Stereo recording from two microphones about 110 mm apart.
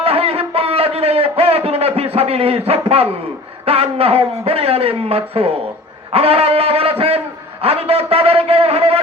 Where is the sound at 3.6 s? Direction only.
65° right (ahead or behind).